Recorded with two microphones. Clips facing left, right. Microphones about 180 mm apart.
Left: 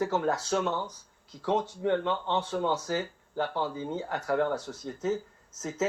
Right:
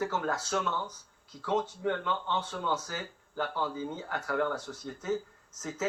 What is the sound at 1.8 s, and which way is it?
Speech, 30° left (ahead or behind).